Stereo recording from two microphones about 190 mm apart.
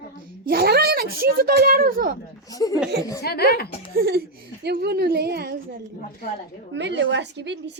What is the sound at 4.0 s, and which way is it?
A woman's voice, 55° right (ahead or behind).